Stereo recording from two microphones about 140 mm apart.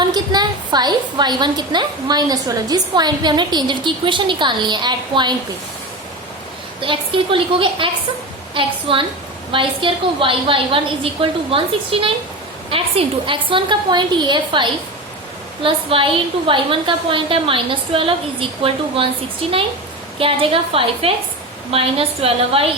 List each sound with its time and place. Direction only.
0.0 s a woman's voice: 30° right (ahead or behind)
6.8 s a woman's voice: 40° right (ahead or behind)